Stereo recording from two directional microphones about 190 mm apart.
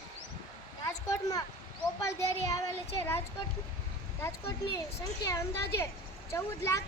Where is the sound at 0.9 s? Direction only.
15° left (ahead or behind).